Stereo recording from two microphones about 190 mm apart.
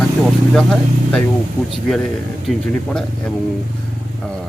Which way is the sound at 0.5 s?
5° left (ahead or behind).